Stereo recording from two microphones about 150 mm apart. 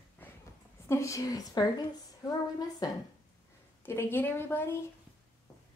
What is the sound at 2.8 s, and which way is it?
Speech, 25° left (ahead or behind).